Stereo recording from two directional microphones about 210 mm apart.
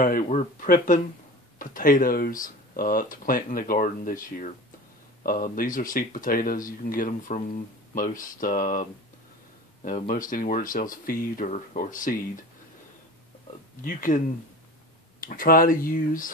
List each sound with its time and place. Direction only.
0.0 s speech: 35° left (ahead or behind)
9.8 s speech: 40° left (ahead or behind)
13.8 s speech: 40° left (ahead or behind)